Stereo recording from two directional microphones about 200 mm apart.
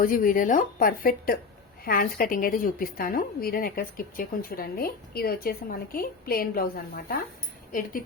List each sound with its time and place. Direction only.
0.0 s a woman's voice: 45° left (ahead or behind)